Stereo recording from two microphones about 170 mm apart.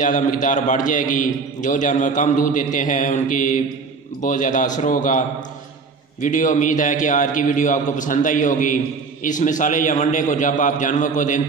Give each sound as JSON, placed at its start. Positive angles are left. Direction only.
{"t": 0.0, "sound": "a man's voice", "side_deg": 50}
{"t": 6.2, "sound": "a man's voice", "side_deg": 50}